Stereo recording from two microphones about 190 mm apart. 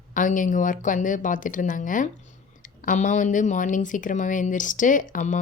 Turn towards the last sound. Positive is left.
turn(degrees=40)  # may be behind; listen again after turning